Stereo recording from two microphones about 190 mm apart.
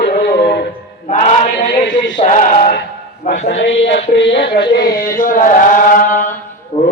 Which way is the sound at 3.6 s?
70° left (ahead or behind).